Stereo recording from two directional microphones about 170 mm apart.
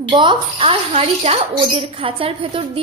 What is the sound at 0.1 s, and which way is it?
A woman's voice, 30° right (ahead or behind).